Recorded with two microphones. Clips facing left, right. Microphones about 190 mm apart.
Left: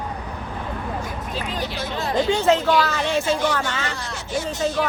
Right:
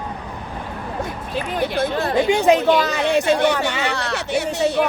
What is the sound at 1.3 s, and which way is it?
Speech, 55° right (ahead or behind).